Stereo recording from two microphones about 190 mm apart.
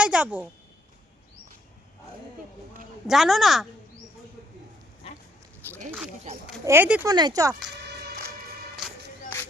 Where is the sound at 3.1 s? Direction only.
Centre (ahead or behind).